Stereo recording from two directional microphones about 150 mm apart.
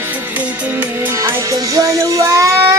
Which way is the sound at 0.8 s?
15° right (ahead or behind).